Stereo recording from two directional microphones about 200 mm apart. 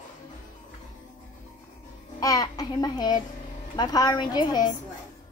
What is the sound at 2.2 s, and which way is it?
A child's voice, 15° left (ahead or behind).